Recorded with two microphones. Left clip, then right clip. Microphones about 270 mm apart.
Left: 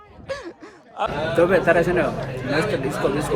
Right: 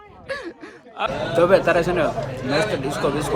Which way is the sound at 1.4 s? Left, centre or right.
Centre.